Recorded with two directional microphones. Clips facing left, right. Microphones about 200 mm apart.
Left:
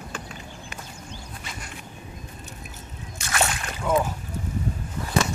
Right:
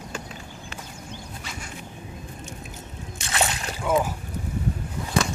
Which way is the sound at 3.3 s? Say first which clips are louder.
Even; 25° right (ahead or behind).